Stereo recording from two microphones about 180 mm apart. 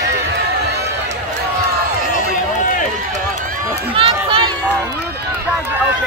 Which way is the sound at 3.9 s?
30° right (ahead or behind).